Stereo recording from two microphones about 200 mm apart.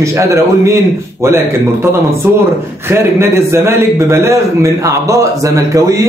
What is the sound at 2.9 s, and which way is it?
Speech, 15° right (ahead or behind).